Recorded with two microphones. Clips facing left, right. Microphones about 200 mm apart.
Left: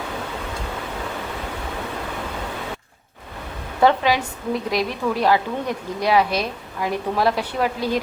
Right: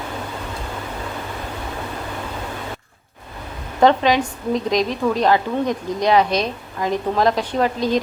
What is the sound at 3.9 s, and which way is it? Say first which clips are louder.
A woman's voice: right 3 dB; 10° left (ahead or behind).